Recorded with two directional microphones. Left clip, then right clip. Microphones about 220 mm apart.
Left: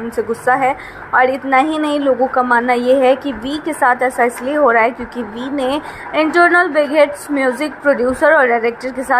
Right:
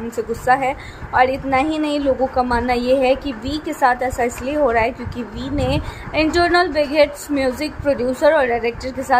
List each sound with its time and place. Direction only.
0.5 s a woman's voice: 5° left (ahead or behind)